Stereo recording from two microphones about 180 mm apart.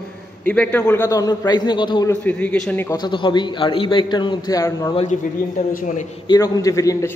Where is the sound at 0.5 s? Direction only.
10° left (ahead or behind); by 2.1 s 25° left (ahead or behind).